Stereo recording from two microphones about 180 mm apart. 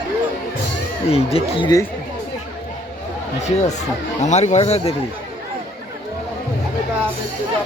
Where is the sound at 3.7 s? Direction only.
40° left (ahead or behind).